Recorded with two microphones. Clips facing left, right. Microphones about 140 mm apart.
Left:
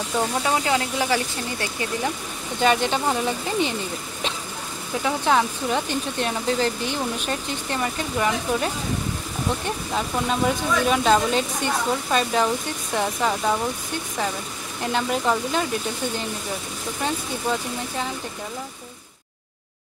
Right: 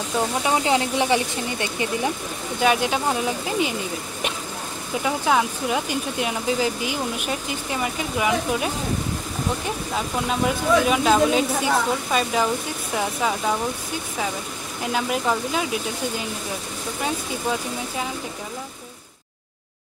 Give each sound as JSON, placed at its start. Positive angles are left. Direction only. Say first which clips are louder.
{"t": 0.4, "sound": "speech", "louder": "right 4 dB", "side_deg": -20}
{"t": 2.6, "sound": "speech", "louder": "even", "side_deg": -10}
{"t": 5.0, "sound": "speech", "louder": "even", "side_deg": -5}
{"t": 9.7, "sound": "speech", "louder": "even", "side_deg": -5}
{"t": 14.8, "sound": "speech", "louder": "even", "side_deg": -5}
{"t": 17.0, "sound": "speech", "louder": "even", "side_deg": -5}